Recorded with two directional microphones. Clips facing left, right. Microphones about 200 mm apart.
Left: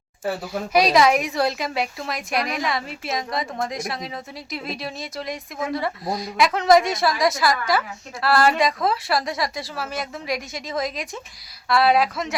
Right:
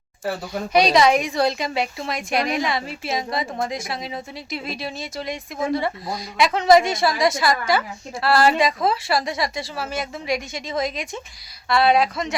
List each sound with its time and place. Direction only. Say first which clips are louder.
0.3 s speech: even; 5° left (ahead or behind)